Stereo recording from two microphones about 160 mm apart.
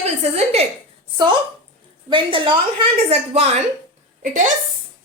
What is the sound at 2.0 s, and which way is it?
A woman's voice, 30° right (ahead or behind).